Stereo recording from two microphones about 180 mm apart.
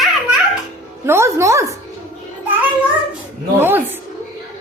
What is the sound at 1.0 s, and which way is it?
Speech, 15° right (ahead or behind).